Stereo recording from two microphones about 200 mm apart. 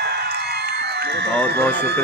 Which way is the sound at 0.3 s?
55° right (ahead or behind).